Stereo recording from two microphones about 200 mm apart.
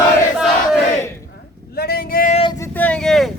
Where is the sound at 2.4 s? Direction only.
25° left (ahead or behind).